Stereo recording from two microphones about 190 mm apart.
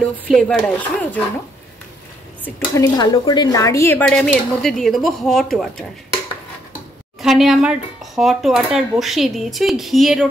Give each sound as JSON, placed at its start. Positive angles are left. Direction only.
{"t": 0.3, "sound": "speech", "side_deg": 0}
{"t": 2.4, "sound": "speech", "side_deg": 10}
{"t": 3.0, "sound": "speech", "side_deg": 20}
{"t": 4.0, "sound": "speech", "side_deg": 5}
{"t": 7.2, "sound": "speech", "side_deg": 0}